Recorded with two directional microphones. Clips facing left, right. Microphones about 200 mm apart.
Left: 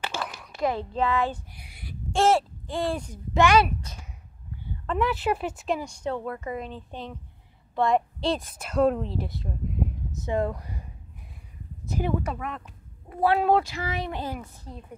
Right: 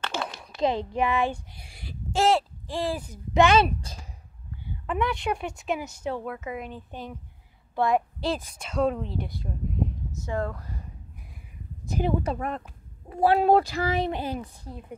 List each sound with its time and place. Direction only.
0.2 s a sound: 25° right (ahead or behind)
0.6 s a child's voice: 20° right (ahead or behind)
1.7 s speech: 30° right (ahead or behind)
2.1 s speech: centre (ahead or behind)
3.3 s speech: 25° right (ahead or behind)
4.9 s speech: 5° left (ahead or behind)
10.2 s speech: 20° left (ahead or behind)
12.0 s speech: 35° right (ahead or behind)
12.4 s speech: 45° right (ahead or behind)
14.1 s a child's voice: 20° right (ahead or behind)